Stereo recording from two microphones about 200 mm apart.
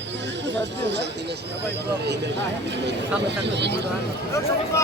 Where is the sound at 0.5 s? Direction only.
60° right (ahead or behind).